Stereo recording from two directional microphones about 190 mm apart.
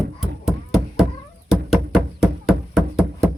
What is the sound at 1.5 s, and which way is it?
Knock, 5° right (ahead or behind).